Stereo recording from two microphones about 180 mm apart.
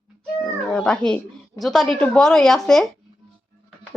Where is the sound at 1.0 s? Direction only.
5° left (ahead or behind).